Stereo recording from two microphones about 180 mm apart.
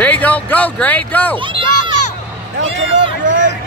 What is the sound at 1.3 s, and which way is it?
Speech, 25° right (ahead or behind).